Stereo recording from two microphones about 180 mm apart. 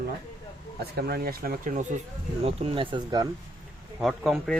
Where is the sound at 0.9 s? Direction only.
60° right (ahead or behind).